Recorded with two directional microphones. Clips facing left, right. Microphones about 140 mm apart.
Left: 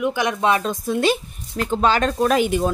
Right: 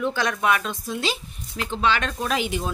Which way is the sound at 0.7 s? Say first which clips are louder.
Left 8 dB; 55° left (ahead or behind).